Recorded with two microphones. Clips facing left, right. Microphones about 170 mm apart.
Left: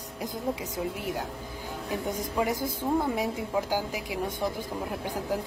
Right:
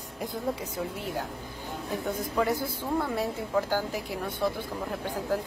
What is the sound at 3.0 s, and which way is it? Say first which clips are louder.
Speech: left 1 dB; 15° left (ahead or behind).